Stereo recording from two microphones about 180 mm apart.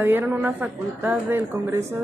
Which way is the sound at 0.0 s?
10° right (ahead or behind).